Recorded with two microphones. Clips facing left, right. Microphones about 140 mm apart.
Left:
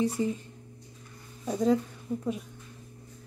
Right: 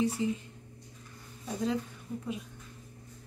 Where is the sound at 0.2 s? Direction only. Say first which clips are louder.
Left 2 dB; 45° left (ahead or behind).